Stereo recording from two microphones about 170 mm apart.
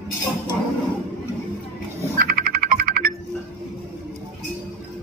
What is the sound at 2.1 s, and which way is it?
Music, 60° right (ahead or behind).